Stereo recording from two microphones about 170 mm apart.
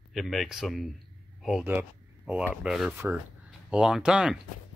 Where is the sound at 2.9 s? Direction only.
15° right (ahead or behind).